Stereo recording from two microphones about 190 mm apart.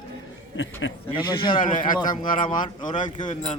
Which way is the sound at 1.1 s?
25° left (ahead or behind).